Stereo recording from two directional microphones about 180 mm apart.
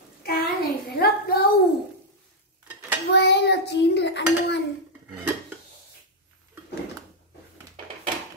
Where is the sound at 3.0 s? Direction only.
70° left (ahead or behind).